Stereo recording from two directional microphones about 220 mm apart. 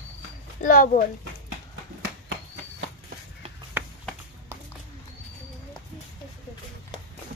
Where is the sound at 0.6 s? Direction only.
35° left (ahead or behind).